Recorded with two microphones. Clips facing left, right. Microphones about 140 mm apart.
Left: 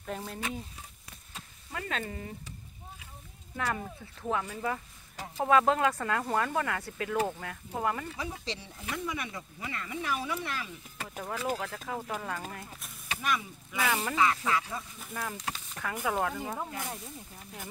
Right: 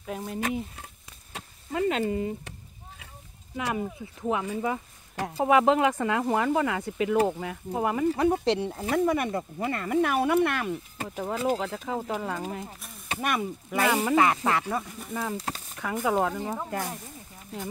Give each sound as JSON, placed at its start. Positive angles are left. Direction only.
{"t": 0.4, "sound": "speech", "side_deg": -55}
{"t": 1.7, "sound": "speech", "side_deg": -20}
{"t": 3.5, "sound": "speech", "side_deg": -15}
{"t": 8.2, "sound": "speech", "side_deg": -60}
{"t": 11.0, "sound": "speech", "side_deg": -25}
{"t": 13.2, "sound": "speech", "side_deg": -55}
{"t": 13.8, "sound": "speech", "side_deg": -20}
{"t": 14.1, "sound": "speech", "side_deg": -55}
{"t": 15.1, "sound": "speech", "side_deg": -25}